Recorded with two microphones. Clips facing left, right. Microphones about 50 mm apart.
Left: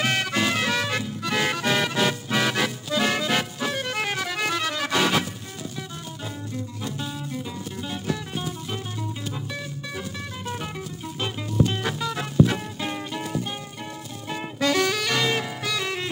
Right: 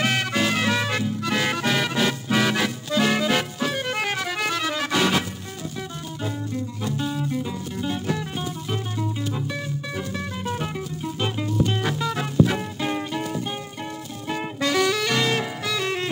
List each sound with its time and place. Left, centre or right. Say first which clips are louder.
0.0 s music: right 1 dB; centre
6.2 s music: right 6 dB; centre
9.9 s music: right 4 dB; centre
14.3 s saxophone: even; centre